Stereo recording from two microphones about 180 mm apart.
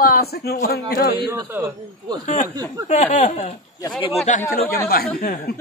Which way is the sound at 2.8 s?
40° left (ahead or behind).